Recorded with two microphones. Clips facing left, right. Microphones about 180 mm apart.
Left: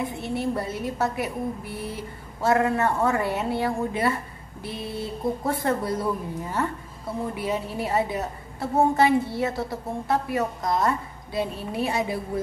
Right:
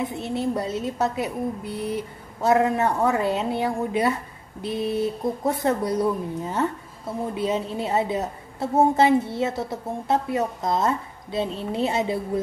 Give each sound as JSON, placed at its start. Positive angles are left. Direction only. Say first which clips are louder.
{"t": 0.0, "sound": "a woman's voice", "louder": "right 1 dB", "side_deg": -20}